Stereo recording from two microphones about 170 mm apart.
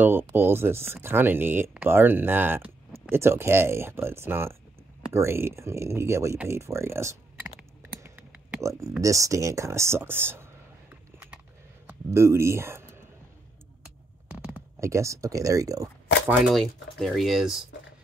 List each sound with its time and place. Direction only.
0.0 s speech: 10° right (ahead or behind)
8.0 s a sound: 10° right (ahead or behind)
9.0 s speech: 20° right (ahead or behind)
12.1 s speech: 15° right (ahead or behind)
13.8 s a sound: 5° right (ahead or behind)
14.8 s speech: 15° right (ahead or behind)
16.3 s speech: centre (ahead or behind)